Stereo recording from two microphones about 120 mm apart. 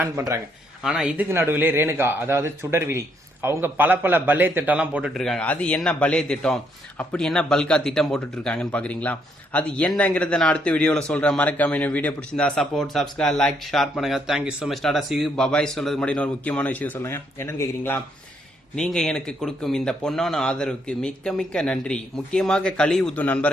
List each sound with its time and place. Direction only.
0.0 s a man's voice: 25° right (ahead or behind)
0.9 s a man's voice: 5° right (ahead or behind)
1.3 s a man's voice: 20° right (ahead or behind)
5.1 s speech: 5° left (ahead or behind); by 18.0 s 20° left (ahead or behind)
18.8 s speech: 5° left (ahead or behind)